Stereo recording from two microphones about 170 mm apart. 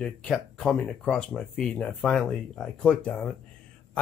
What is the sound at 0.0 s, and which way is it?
Speech, 5° left (ahead or behind).